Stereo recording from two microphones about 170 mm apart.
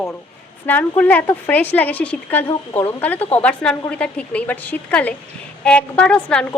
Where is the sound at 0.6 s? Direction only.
10° left (ahead or behind).